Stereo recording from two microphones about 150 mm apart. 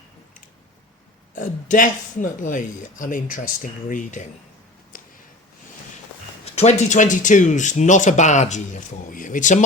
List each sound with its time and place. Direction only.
1.4 s speech: 60° left (ahead or behind)
6.4 s speech: 45° left (ahead or behind)